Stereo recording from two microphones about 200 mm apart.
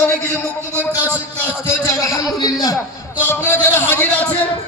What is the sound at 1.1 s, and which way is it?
Speech, 5° right (ahead or behind).